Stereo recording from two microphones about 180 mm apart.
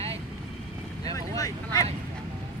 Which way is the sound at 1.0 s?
20° left (ahead or behind).